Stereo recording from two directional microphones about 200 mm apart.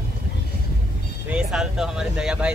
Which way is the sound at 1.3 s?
5° right (ahead or behind).